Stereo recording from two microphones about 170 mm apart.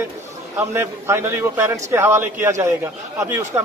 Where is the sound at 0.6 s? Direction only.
15° right (ahead or behind).